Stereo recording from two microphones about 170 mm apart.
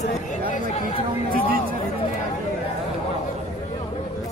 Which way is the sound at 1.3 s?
60° right (ahead or behind).